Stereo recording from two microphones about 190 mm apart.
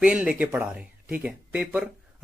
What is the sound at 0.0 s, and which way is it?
Speech, 5° right (ahead or behind).